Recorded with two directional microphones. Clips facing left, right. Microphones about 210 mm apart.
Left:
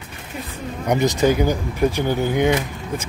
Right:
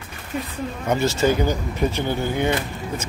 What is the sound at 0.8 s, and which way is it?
Speech, 15° left (ahead or behind).